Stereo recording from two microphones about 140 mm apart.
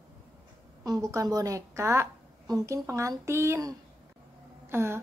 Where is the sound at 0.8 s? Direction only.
25° right (ahead or behind).